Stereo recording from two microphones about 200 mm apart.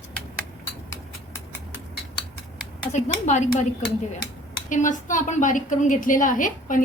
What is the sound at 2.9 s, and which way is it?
Speech, 35° left (ahead or behind).